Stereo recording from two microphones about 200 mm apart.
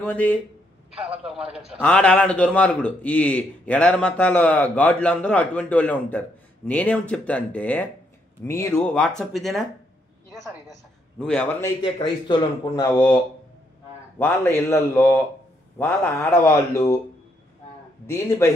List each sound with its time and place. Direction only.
0.0 s a man's voice: 10° left (ahead or behind)
1.0 s a man's voice: 5° right (ahead or behind)
11.1 s a man's voice: 5° left (ahead or behind)
11.8 s a man's voice: 25° left (ahead or behind)
18.0 s a man's voice: 15° left (ahead or behind)